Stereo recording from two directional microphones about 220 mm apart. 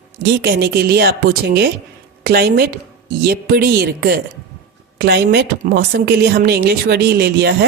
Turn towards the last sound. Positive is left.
turn(degrees=-45)  # may be behind; listen again after turning